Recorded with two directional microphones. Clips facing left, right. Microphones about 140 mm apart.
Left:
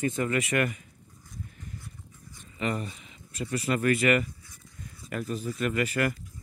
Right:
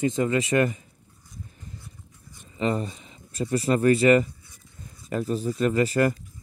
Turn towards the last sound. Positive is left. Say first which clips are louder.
# right 6 dB
turn(degrees=-35)  # may be behind; listen again after turning